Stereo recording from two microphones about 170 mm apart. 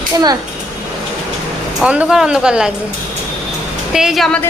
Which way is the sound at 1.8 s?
5° right (ahead or behind).